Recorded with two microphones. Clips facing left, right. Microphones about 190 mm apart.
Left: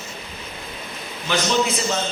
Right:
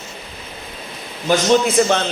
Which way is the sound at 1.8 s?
55° right (ahead or behind).